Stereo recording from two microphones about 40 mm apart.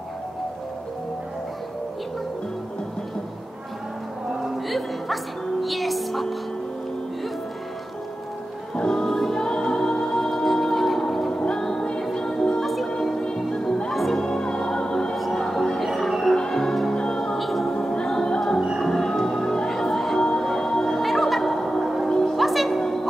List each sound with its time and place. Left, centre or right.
4.6 s music: centre
8.7 s music: centre
9.0 s music: centre
14.1 s music: centre
15.1 s music: centre
15.8 s music: centre
16.3 s music: centre
17.4 s music: centre
17.7 s music: centre
20.2 s music: centre
21.0 s music: centre